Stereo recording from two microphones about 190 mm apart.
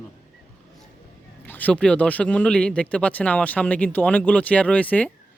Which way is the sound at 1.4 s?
10° left (ahead or behind).